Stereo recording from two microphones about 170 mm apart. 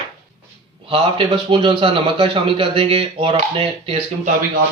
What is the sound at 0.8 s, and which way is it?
A man's voice, 30° right (ahead or behind).